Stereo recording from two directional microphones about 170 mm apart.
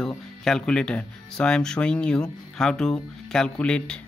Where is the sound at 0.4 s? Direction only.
5° left (ahead or behind).